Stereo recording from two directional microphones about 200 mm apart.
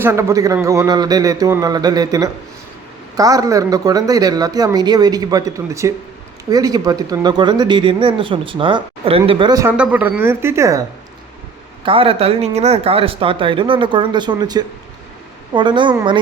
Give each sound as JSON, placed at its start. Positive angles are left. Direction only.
{"t": 0.0, "sound": "speech", "side_deg": -15}
{"t": 9.7, "sound": "speech", "side_deg": -5}
{"t": 11.9, "sound": "speech", "side_deg": -30}